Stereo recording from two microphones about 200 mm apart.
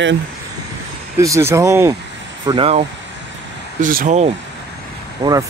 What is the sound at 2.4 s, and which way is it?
Speech, 25° right (ahead or behind).